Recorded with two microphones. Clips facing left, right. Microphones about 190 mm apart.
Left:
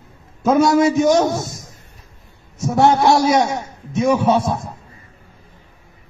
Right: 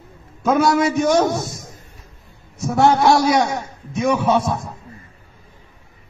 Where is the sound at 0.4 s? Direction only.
25° left (ahead or behind).